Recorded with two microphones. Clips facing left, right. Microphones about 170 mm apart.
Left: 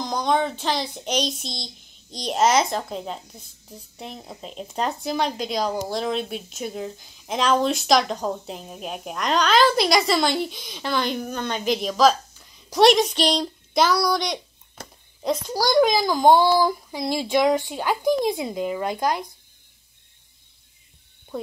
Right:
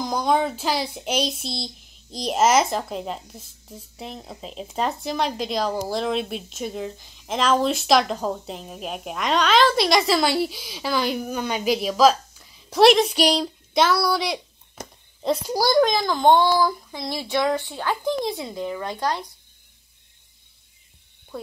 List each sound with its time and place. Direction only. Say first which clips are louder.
0.0 s child singing: right 1 dB; 5° right (ahead or behind)
14.8 s a sound: right 3 dB; 20° right (ahead or behind)
15.4 s a child's voice: right 1 dB; 10° right (ahead or behind)
15.8 s speech: left 4 dB; 5° left (ahead or behind)